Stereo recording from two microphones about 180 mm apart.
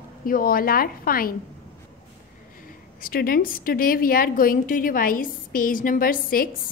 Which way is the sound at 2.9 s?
55° left (ahead or behind).